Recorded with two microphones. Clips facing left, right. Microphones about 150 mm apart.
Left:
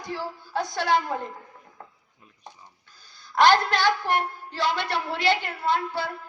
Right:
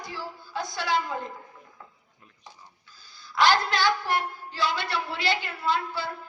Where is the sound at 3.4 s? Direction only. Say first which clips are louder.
Left 3 dB; 60° left (ahead or behind).